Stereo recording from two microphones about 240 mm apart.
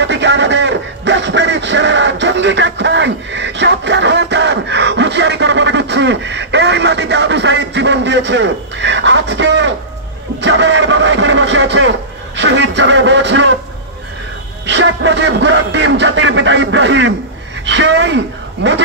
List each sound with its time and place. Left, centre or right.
0.0 s radio: right
10.4 s speech: right
14.7 s speech: right